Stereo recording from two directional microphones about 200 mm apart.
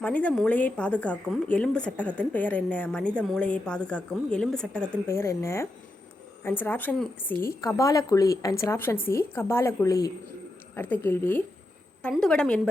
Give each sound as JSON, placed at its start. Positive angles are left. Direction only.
{"t": 0.0, "sound": "a woman's voice", "side_deg": 5}